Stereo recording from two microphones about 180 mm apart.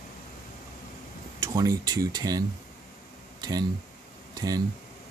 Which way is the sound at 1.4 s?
20° right (ahead or behind).